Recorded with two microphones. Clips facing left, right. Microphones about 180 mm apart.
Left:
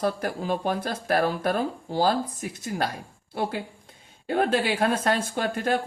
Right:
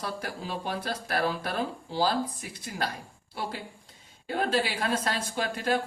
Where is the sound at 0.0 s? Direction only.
50° left (ahead or behind).